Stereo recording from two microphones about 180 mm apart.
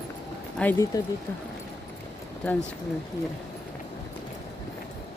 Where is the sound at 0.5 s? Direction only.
10° left (ahead or behind).